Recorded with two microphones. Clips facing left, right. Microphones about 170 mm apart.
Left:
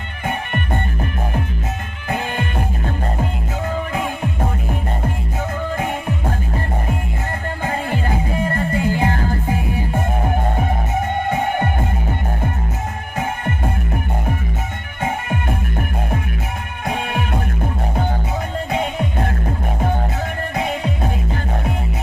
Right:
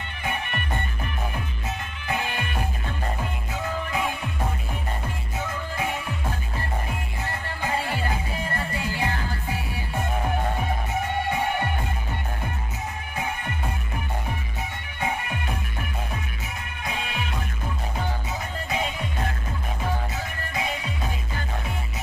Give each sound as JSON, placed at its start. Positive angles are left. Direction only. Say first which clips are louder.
{"t": 2.0, "sound": "music", "louder": "left 5 dB", "side_deg": 50}
{"t": 3.9, "sound": "music", "louder": "left 5 dB", "side_deg": 50}
{"t": 5.8, "sound": "music", "louder": "left 6 dB", "side_deg": 50}
{"t": 7.6, "sound": "music", "louder": "left 4 dB", "side_deg": 50}
{"t": 11.2, "sound": "music", "louder": "left 6 dB", "side_deg": 50}
{"t": 15.0, "sound": "music", "louder": "left 6 dB", "side_deg": 50}
{"t": 16.8, "sound": "music", "louder": "left 8 dB", "side_deg": 60}
{"t": 18.7, "sound": "music", "louder": "left 6 dB", "side_deg": 60}